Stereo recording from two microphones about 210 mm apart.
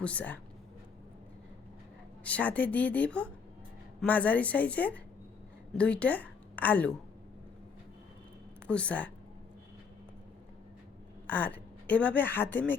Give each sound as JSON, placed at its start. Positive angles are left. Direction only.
{"t": 0.0, "sound": "a woman's voice", "side_deg": 5}
{"t": 2.2, "sound": "a woman's voice", "side_deg": 5}
{"t": 8.6, "sound": "a woman's voice", "side_deg": 5}
{"t": 11.3, "sound": "a woman's voice", "side_deg": 5}